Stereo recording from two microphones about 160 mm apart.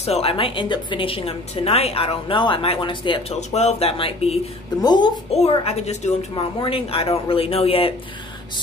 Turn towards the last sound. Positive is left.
turn(degrees=35)  # may be behind; listen again after turning